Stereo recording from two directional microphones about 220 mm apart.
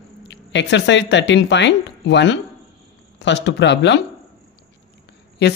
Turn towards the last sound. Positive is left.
turn(degrees=50)  # may be behind; listen again after turning